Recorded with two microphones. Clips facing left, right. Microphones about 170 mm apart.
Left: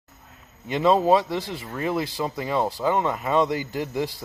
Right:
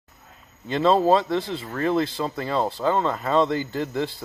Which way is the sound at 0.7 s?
15° left (ahead or behind).